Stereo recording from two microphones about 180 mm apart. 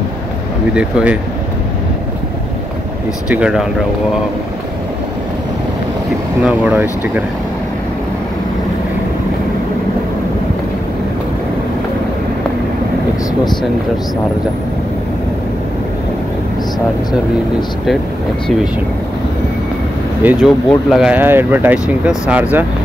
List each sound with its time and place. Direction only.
0.7 s speech: 5° right (ahead or behind)
3.3 s speech: 5° right (ahead or behind)
6.4 s speech: 10° right (ahead or behind)
20.2 s speech: centre (ahead or behind)